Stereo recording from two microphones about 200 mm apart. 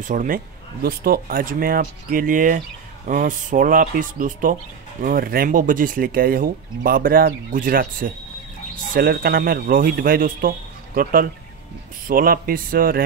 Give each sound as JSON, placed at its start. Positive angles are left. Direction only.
{"t": 0.0, "sound": "speech", "side_deg": -40}